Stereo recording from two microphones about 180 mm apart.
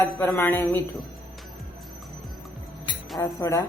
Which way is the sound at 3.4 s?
20° left (ahead or behind).